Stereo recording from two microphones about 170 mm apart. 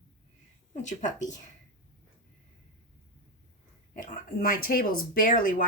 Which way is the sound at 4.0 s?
55° left (ahead or behind).